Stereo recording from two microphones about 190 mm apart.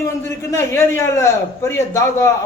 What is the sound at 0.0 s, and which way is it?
A man's voice, 15° left (ahead or behind).